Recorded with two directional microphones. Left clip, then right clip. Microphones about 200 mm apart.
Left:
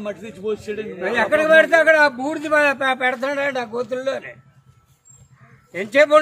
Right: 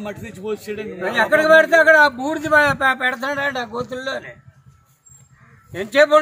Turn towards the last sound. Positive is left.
turn(degrees=0)  # may be behind; listen again after turning